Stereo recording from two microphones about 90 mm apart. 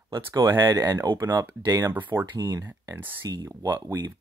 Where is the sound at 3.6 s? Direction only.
35° right (ahead or behind).